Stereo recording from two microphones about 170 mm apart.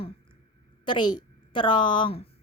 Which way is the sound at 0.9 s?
25° left (ahead or behind).